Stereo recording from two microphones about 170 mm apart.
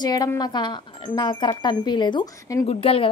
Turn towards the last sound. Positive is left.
turn(degrees=35)  # may be behind; listen again after turning